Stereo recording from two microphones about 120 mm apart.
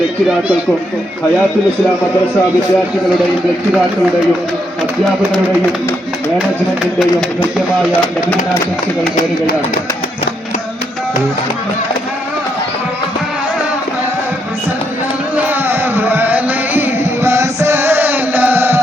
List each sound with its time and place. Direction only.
0.3 s speech: 10° right (ahead or behind)
15.4 s music: 15° right (ahead or behind)